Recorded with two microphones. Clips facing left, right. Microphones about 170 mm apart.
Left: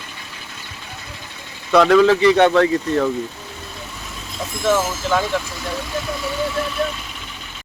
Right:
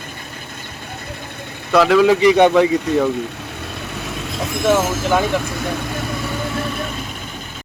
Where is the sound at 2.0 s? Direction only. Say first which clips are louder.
Right 2 dB; 15° right (ahead or behind).